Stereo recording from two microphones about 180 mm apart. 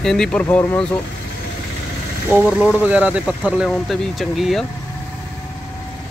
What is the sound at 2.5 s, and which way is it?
Speech, 5° right (ahead or behind).